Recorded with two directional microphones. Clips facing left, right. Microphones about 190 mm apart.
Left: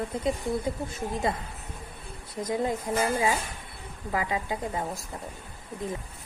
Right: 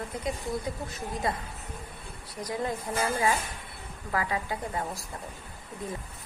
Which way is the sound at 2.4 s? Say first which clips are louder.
Left 4 dB; 25° left (ahead or behind).